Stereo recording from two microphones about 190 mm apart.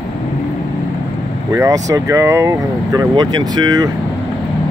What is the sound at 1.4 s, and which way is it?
Speech, 20° right (ahead or behind).